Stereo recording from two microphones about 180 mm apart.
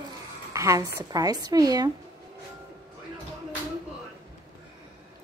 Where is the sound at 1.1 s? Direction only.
20° right (ahead or behind).